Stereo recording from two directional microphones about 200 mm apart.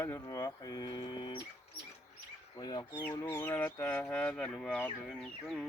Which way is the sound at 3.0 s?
10° left (ahead or behind).